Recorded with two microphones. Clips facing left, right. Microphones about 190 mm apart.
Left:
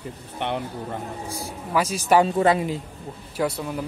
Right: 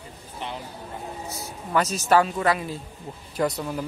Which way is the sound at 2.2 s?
25° left (ahead or behind).